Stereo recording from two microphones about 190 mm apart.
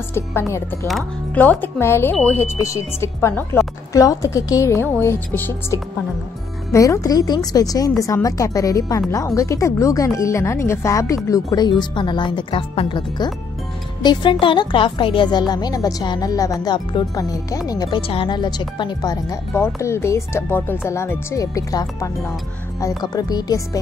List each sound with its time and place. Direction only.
0.1 s a woman's voice: 15° left (ahead or behind)